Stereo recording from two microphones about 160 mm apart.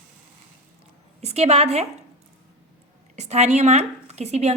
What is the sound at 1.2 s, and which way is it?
Speech, 40° right (ahead or behind).